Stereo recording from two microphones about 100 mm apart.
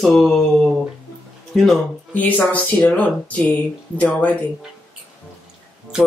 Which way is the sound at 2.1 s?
15° left (ahead or behind).